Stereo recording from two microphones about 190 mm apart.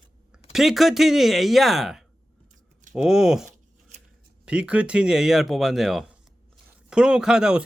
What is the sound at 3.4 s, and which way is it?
Shuffling cards, 40° right (ahead or behind).